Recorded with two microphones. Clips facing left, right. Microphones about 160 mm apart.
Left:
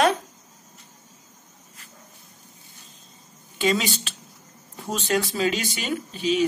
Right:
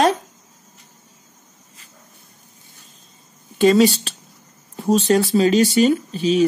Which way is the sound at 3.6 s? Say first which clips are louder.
Right 10 dB; 45° right (ahead or behind).